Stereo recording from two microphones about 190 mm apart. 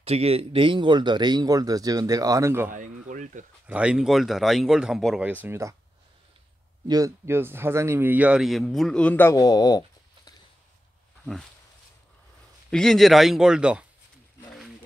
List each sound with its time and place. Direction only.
0.0 s speech: 35° right (ahead or behind); by 2.7 s 15° right (ahead or behind)
2.7 s a sound: 40° right (ahead or behind)
3.6 s speech: 5° right (ahead or behind)
6.9 s speech: 15° right (ahead or behind); by 10.3 s 20° left (ahead or behind)
12.7 s speech: centre (ahead or behind)